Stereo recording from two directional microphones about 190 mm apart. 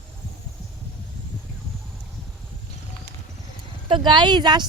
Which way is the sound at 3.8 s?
25° right (ahead or behind).